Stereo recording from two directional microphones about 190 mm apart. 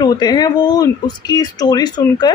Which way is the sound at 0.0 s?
20° left (ahead or behind).